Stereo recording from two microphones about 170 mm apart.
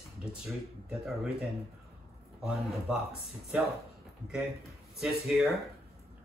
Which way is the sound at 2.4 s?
Centre (ahead or behind).